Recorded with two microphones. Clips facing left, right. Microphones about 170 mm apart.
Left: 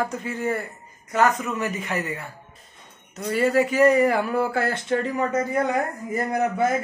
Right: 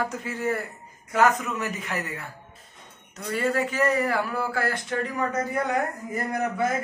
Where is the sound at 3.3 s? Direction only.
5° left (ahead or behind); by 5.2 s 25° left (ahead or behind).